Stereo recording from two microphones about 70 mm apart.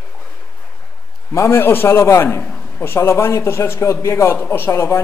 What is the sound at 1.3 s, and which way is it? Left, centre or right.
A man's voice, left.